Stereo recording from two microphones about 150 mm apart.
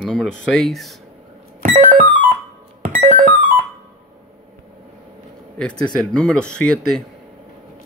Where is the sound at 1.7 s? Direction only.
60° right (ahead or behind).